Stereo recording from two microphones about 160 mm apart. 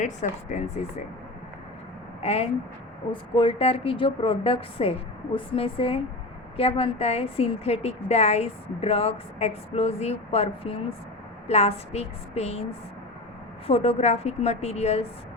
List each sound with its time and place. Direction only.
0.0 s speech: 45° left (ahead or behind)
2.2 s a woman's voice: 40° left (ahead or behind)
13.7 s a woman's voice: 40° left (ahead or behind)